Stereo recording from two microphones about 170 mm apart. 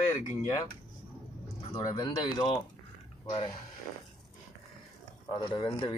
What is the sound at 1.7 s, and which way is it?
Speech, 25° left (ahead or behind).